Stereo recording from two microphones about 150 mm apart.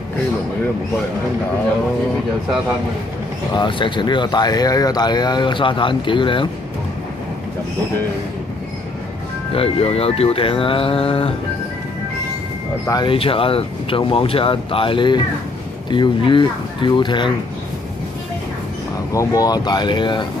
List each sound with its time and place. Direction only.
3.5 s speech: 35° left (ahead or behind)
9.5 s speech: 40° left (ahead or behind)
12.8 s speech: 25° left (ahead or behind)
13.1 s speech: 40° left (ahead or behind)
19.1 s speech: 25° left (ahead or behind)